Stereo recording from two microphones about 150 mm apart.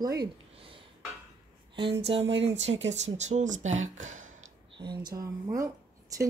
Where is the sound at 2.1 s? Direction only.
45° right (ahead or behind).